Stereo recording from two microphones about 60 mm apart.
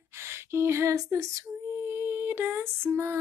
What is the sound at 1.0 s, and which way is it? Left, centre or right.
Female singing, right.